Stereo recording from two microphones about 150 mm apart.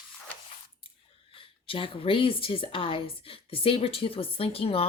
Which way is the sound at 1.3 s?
35° left (ahead or behind).